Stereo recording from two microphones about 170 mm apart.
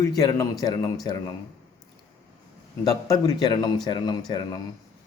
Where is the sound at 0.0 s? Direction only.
20° left (ahead or behind).